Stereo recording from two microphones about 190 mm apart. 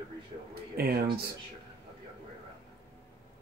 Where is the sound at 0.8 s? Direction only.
55° right (ahead or behind).